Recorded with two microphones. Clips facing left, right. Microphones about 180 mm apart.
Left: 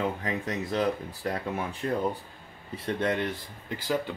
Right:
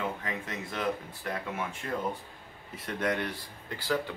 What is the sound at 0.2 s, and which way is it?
Speech, 35° left (ahead or behind).